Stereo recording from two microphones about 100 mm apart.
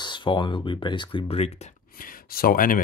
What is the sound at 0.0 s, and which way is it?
Speech, 50° left (ahead or behind).